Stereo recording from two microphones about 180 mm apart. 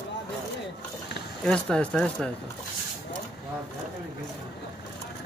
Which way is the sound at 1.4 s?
5° left (ahead or behind).